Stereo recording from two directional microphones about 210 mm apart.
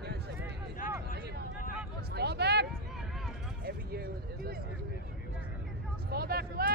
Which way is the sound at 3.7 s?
45° right (ahead or behind).